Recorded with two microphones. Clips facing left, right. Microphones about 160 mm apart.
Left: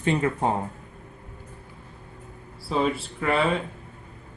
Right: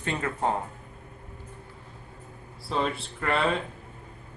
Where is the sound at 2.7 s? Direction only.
5° left (ahead or behind).